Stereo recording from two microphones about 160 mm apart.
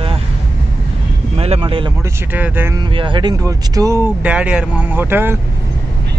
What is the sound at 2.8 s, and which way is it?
Speech, 30° right (ahead or behind).